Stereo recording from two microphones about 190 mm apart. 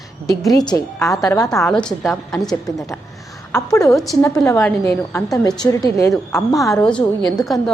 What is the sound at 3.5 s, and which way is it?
Speech, 15° left (ahead or behind).